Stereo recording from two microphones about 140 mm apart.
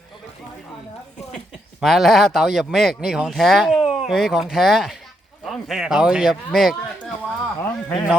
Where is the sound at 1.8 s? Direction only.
Centre (ahead or behind).